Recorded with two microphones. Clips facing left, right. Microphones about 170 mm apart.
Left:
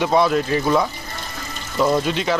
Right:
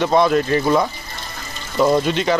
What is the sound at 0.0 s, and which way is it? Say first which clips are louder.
Speech: right 2 dB; 5° left (ahead or behind).